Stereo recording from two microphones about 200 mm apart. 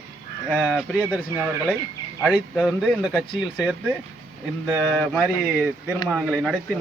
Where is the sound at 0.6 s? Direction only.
Centre (ahead or behind).